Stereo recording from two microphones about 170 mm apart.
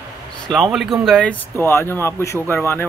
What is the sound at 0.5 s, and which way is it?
Speech, centre (ahead or behind).